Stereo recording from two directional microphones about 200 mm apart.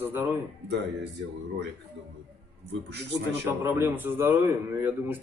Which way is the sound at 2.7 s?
60° right (ahead or behind).